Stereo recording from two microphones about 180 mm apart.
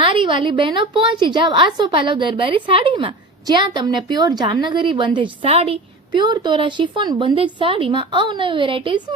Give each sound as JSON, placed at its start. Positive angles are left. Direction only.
{"t": 0.0, "sound": "a woman's voice", "side_deg": -30}